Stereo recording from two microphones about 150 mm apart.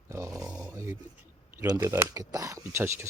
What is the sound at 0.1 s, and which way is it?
Dog, 20° right (ahead or behind).